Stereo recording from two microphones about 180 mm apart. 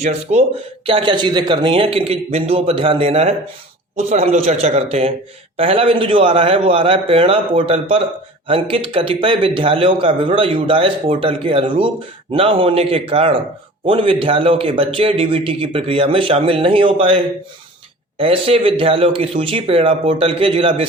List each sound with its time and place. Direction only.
0.0 s a man's voice: 35° right (ahead or behind)